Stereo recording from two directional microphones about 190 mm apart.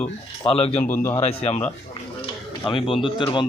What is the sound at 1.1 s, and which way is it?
Speech, 30° left (ahead or behind).